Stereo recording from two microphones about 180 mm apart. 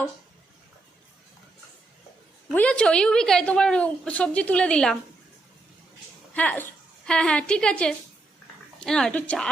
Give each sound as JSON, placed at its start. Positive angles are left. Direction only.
{"t": 2.5, "sound": "a woman's voice", "side_deg": 5}
{"t": 6.3, "sound": "a woman's voice", "side_deg": 10}